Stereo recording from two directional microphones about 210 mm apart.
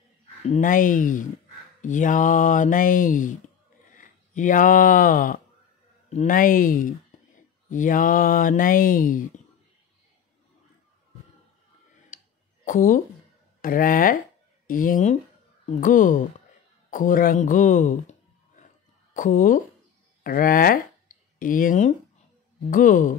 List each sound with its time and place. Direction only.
0.5 s speech: 40° left (ahead or behind)
12.1 s clicking: 40° left (ahead or behind)
12.6 s speech: 40° left (ahead or behind)
19.1 s speech: 40° left (ahead or behind)